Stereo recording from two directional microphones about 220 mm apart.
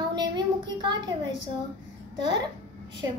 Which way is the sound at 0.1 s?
20° right (ahead or behind).